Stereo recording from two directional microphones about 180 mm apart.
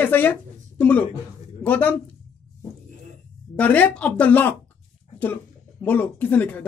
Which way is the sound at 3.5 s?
10° left (ahead or behind).